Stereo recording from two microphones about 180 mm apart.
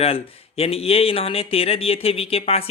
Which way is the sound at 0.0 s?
35° left (ahead or behind).